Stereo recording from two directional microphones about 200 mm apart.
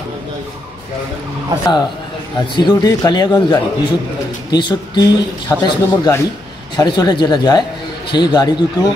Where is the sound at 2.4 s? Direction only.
20° left (ahead or behind).